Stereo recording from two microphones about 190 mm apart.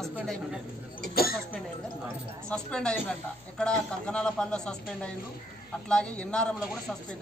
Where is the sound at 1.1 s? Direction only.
50° left (ahead or behind).